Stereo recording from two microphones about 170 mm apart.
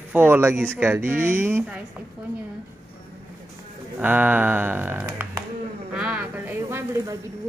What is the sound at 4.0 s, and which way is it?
Speech, 10° right (ahead or behind).